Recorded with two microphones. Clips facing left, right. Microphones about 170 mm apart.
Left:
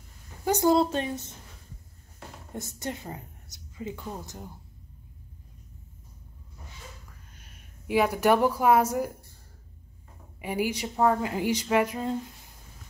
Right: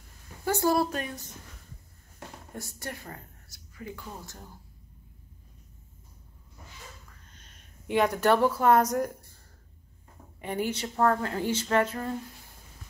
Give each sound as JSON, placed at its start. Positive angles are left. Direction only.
{"t": 0.5, "sound": "a woman's voice", "side_deg": 20}
{"t": 2.5, "sound": "speech", "side_deg": 20}
{"t": 7.1, "sound": "a sound", "side_deg": 10}
{"t": 10.4, "sound": "speech", "side_deg": 10}